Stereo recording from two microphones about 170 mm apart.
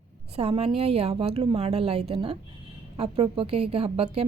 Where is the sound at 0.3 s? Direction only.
35° right (ahead or behind).